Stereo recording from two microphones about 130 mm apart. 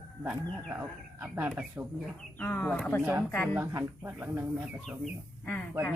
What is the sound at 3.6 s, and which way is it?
Speech, 20° right (ahead or behind).